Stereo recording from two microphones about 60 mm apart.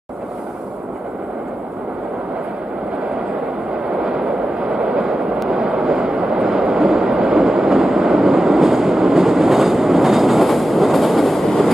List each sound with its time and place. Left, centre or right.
4.0 s vehicle: centre
4.9 s train: centre
5.4 s vehicle: centre